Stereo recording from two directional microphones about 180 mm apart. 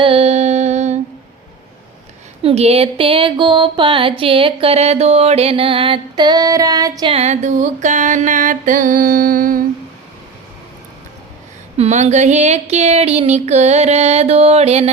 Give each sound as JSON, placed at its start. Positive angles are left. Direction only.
{"t": 0.0, "sound": "music", "side_deg": -35}
{"t": 2.4, "sound": "music", "side_deg": -35}
{"t": 7.1, "sound": "mantra", "side_deg": -35}
{"t": 11.8, "sound": "a sound", "side_deg": -40}